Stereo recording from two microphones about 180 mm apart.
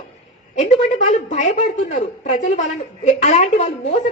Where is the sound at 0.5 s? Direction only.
40° left (ahead or behind).